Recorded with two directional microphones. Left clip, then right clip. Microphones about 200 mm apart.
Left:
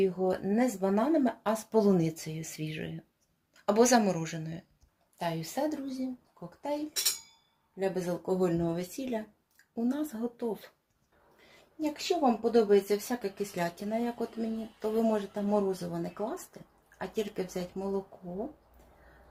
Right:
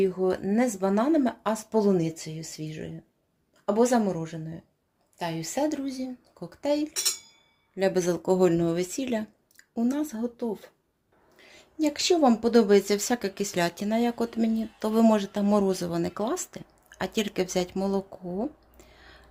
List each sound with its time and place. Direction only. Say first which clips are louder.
0.0 s a woman's voice: right 4 dB; 25° right (ahead or behind)
5.5 s a woman's voice: right 8 dB; 35° right (ahead or behind)
9.7 s speech: right 5 dB; 30° right (ahead or behind)
11.8 s a woman's voice: right 7 dB; 60° right (ahead or behind)